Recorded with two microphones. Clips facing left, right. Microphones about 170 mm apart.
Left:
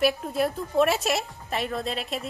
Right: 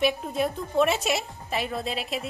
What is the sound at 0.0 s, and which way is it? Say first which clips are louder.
A woman's voice: left 1 dB; centre (ahead or behind).